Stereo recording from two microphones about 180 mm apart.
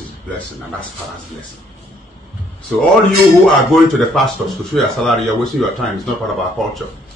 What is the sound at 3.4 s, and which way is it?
Speech, centre (ahead or behind).